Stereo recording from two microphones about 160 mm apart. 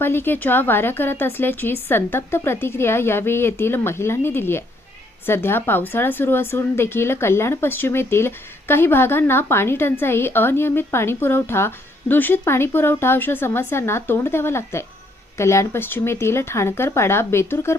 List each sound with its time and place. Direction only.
0.0 s speech: 15° left (ahead or behind)